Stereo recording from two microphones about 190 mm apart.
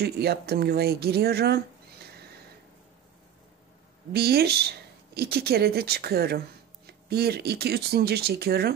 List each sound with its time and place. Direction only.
0.0 s speech: 55° right (ahead or behind)
4.1 s speech: 55° right (ahead or behind)